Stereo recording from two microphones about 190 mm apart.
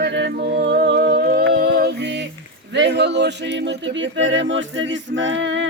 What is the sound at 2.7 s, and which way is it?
Speech, 65° right (ahead or behind).